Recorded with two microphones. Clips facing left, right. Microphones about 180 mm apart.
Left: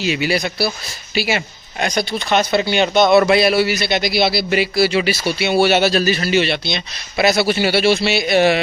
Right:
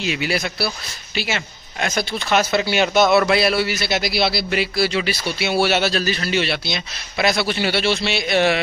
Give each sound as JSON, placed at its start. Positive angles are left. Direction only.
{"t": 0.0, "sound": "a man's voice", "side_deg": 0}
{"t": 1.9, "sound": "a man's voice", "side_deg": 0}